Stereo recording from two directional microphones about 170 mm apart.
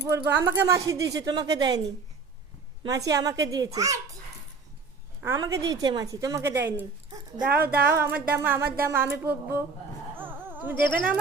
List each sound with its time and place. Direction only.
0.0 s speech: 15° right (ahead or behind)
2.8 s speech: 20° right (ahead or behind)
5.2 s speech: 15° right (ahead or behind)
7.5 s a woman's voice: 65° right (ahead or behind)
7.9 s a sound: 15° right (ahead or behind)
8.6 s a woman's voice: 60° right (ahead or behind)
8.9 s a sound: 15° right (ahead or behind)